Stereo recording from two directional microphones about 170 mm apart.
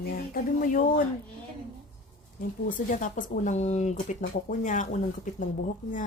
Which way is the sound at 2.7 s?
50° left (ahead or behind).